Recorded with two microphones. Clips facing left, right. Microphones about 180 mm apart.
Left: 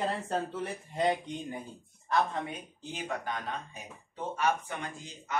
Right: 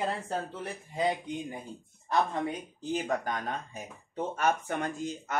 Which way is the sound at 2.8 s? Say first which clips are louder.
Right 7 dB; 40° right (ahead or behind).